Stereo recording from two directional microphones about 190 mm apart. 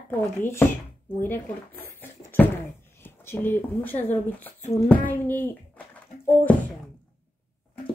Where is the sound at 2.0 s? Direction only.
10° left (ahead or behind).